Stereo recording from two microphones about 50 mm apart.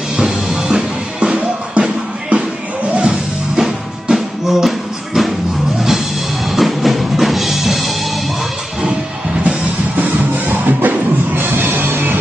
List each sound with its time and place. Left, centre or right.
0.2 s music: centre
3.5 s music: centre
9.4 s music: right